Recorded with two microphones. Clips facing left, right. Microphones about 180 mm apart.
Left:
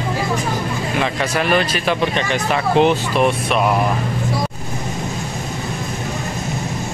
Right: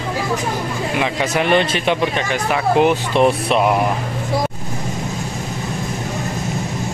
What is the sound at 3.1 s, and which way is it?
Speech, 25° right (ahead or behind).